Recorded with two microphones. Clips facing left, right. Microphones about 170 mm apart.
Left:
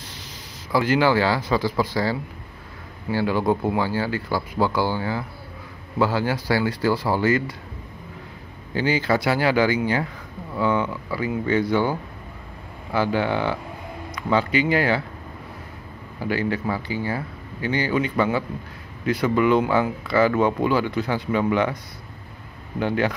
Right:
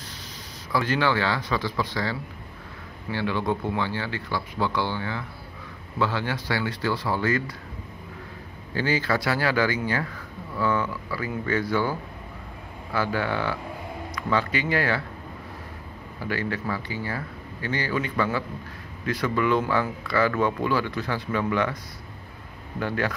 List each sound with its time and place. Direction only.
0.7 s speech: 30° left (ahead or behind)
3.1 s speech: 35° left (ahead or behind)
9.0 s speech: 25° left (ahead or behind)
16.3 s speech: 25° left (ahead or behind)
22.8 s speech: 25° left (ahead or behind)